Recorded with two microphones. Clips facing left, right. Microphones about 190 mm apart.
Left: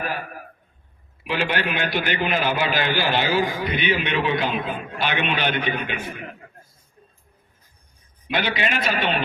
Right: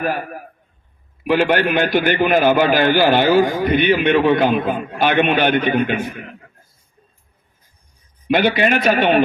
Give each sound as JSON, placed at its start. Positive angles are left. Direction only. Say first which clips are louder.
{"t": 1.2, "sound": "a man's voice", "louder": "right 9 dB", "side_deg": -50}
{"t": 8.3, "sound": "a man's voice", "louder": "right 9 dB", "side_deg": -50}